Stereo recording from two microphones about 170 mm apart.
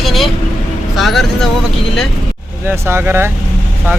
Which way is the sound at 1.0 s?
Centre (ahead or behind).